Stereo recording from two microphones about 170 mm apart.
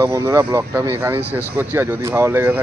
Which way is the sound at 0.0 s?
20° right (ahead or behind).